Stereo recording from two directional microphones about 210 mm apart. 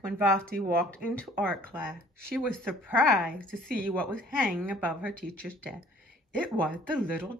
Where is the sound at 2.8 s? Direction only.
10° right (ahead or behind).